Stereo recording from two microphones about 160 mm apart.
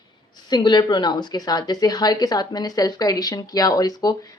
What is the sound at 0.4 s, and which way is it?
A woman's voice, 25° left (ahead or behind).